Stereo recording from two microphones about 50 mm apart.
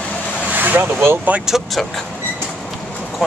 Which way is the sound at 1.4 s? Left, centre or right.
Centre.